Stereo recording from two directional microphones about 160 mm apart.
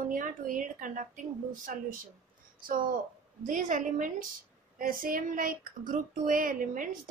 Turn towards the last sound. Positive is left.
turn(degrees=-55)  # may be behind; listen again after turning